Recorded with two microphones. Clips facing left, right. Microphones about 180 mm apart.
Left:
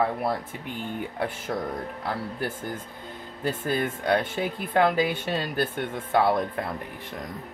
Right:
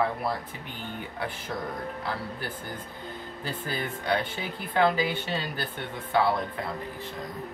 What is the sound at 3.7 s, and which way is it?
Speech, 50° left (ahead or behind).